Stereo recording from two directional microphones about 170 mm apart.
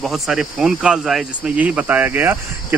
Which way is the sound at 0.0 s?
Centre (ahead or behind).